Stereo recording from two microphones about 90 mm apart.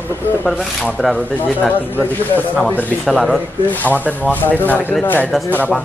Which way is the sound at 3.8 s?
20° left (ahead or behind).